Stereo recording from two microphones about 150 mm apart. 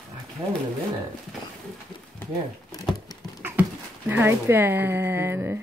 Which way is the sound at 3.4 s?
10° right (ahead or behind).